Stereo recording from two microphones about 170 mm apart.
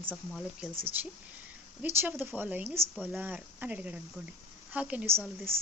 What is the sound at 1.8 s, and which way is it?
A woman's voice, 10° right (ahead or behind).